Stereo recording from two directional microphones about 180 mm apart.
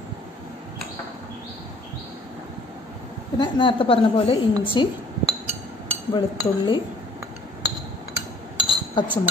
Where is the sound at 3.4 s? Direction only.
30° left (ahead or behind).